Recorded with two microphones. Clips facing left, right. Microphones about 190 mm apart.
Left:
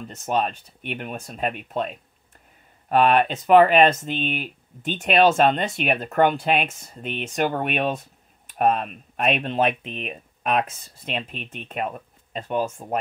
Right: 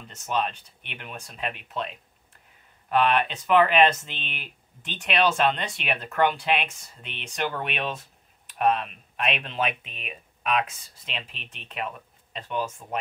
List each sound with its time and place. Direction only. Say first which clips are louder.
0.2 s speech: left 4 dB; 45° left (ahead or behind)